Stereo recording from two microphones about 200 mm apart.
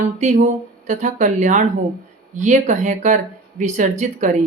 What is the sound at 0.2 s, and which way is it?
Speech, 35° right (ahead or behind).